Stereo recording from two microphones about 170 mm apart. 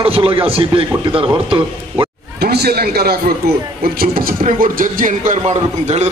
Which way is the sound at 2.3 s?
70° right (ahead or behind).